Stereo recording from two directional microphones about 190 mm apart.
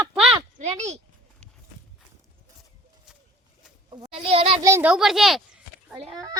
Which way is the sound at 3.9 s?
25° right (ahead or behind).